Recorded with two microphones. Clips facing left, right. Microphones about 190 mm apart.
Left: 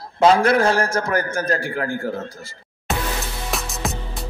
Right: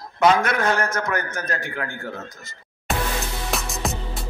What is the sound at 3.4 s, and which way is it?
Music, centre (ahead or behind).